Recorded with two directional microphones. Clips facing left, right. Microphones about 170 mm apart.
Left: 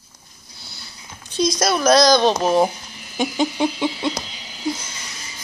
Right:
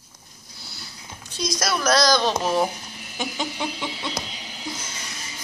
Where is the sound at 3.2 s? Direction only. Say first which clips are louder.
Left 9 dB; 20° left (ahead or behind).